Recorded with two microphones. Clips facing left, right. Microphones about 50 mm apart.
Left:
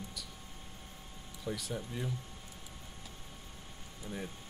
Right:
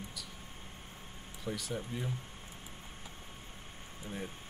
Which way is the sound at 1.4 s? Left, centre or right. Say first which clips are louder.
Even; centre.